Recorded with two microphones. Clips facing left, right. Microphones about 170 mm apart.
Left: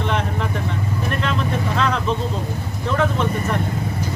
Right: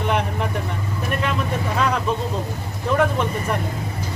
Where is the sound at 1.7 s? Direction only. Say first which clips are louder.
Right 1 dB; 10° right (ahead or behind).